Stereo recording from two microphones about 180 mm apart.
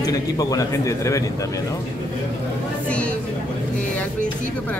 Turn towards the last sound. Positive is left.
turn(degrees=5)  # may be behind; listen again after turning